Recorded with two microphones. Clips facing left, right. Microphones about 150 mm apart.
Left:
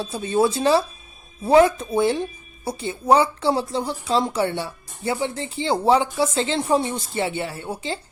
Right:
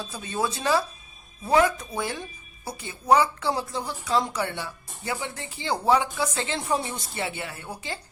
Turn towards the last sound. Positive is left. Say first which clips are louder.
# left 7 dB
turn(degrees=25)  # may be behind; listen again after turning